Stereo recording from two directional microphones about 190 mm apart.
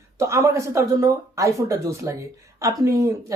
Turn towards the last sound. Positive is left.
turn(degrees=-20)  # may be behind; listen again after turning